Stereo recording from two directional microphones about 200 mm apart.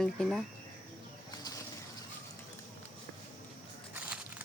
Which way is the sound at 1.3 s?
20° left (ahead or behind).